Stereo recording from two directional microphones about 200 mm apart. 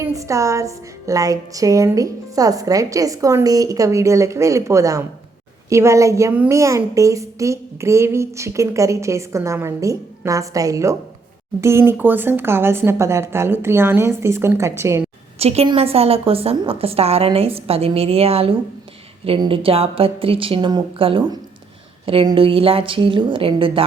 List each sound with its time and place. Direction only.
0.0 s a woman's voice: 15° right (ahead or behind)
15.4 s a woman's voice: 30° right (ahead or behind)